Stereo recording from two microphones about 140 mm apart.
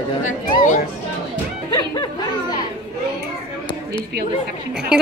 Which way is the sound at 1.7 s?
30° left (ahead or behind).